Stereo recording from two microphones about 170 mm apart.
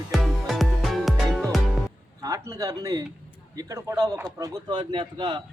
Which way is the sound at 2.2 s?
20° right (ahead or behind).